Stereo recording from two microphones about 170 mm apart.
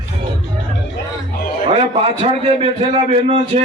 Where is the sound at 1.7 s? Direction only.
35° right (ahead or behind).